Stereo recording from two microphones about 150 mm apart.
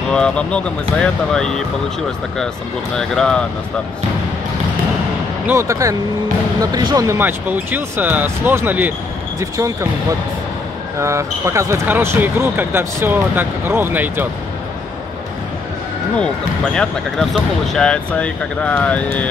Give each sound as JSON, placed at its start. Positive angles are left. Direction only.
{"t": 0.1, "sound": "speech", "side_deg": 5}
{"t": 3.0, "sound": "speech", "side_deg": 5}
{"t": 5.5, "sound": "speech", "side_deg": -20}
{"t": 7.2, "sound": "speech", "side_deg": -15}
{"t": 11.0, "sound": "speech", "side_deg": -20}
{"t": 16.7, "sound": "speech", "side_deg": 5}